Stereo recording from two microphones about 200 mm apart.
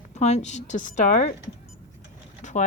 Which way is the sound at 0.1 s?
35° left (ahead or behind).